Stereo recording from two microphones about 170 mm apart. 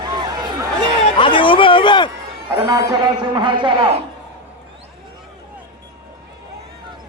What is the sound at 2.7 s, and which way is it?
A man's voice, 25° right (ahead or behind).